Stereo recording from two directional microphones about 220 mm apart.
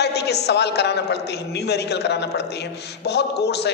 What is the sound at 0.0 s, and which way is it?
A man's voice, 50° left (ahead or behind).